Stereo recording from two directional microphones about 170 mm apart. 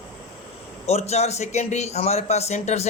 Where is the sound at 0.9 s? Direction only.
40° left (ahead or behind).